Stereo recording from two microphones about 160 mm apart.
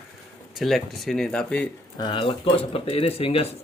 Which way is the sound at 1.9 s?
30° left (ahead or behind).